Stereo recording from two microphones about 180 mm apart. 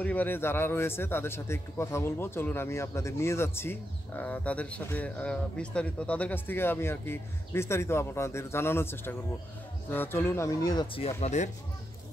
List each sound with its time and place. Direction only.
0.0 s speech: 10° left (ahead or behind); by 11.5 s 40° left (ahead or behind)